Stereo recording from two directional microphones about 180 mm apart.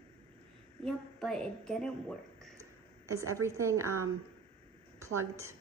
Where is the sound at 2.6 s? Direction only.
15° right (ahead or behind).